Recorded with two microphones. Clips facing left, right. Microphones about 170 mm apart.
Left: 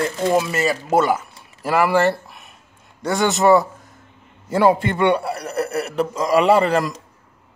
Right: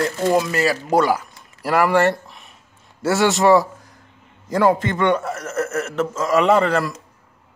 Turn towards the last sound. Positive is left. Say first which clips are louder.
# left 1 dB
turn(degrees=10)  # may be behind; listen again after turning